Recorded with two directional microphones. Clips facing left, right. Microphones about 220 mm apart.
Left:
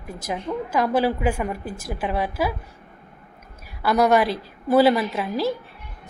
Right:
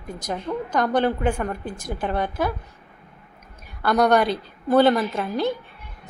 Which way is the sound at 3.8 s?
5° left (ahead or behind).